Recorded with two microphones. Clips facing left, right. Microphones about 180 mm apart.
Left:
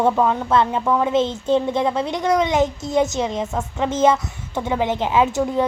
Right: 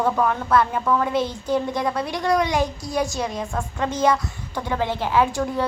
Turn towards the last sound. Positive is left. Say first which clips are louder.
# left 3 dB
turn(degrees=20)  # may be behind; listen again after turning